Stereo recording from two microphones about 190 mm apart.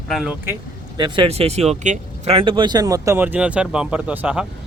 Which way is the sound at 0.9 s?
25° right (ahead or behind).